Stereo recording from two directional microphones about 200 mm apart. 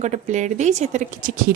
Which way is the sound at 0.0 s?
35° right (ahead or behind).